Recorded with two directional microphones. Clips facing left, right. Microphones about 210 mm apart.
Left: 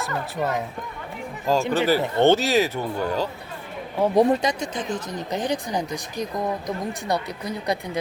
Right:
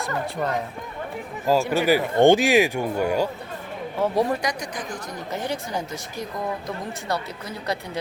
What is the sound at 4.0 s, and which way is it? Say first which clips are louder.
Speech: left 4 dB; 20° left (ahead or behind).